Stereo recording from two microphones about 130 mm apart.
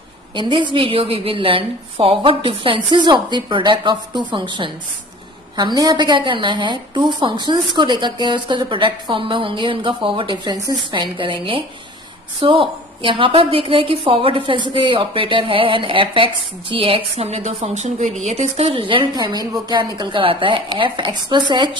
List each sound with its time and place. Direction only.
0.3 s a woman's voice: 40° right (ahead or behind)